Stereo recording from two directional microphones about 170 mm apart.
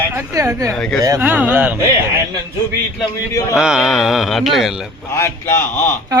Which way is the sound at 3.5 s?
5° right (ahead or behind).